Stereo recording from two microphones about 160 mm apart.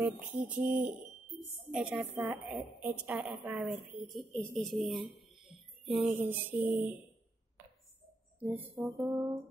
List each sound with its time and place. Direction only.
0.0 s speech: 10° right (ahead or behind)
5.1 s music: centre (ahead or behind)
6.2 s speech: 10° right (ahead or behind)
8.4 s speech: 10° right (ahead or behind)